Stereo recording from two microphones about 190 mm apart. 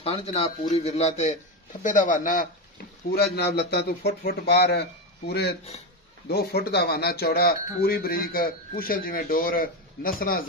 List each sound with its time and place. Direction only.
0.0 s speech: 30° left (ahead or behind)
3.1 s a man's voice: 60° left (ahead or behind)